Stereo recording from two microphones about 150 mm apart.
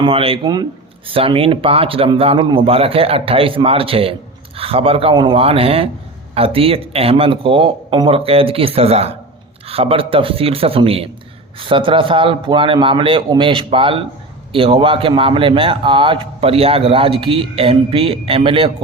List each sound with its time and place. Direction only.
0.0 s a man's voice: 40° right (ahead or behind)